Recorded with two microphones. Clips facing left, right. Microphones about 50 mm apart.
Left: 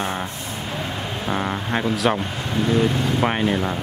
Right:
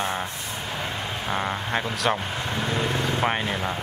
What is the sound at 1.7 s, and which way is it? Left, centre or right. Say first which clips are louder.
Speech: left 5 dB; centre.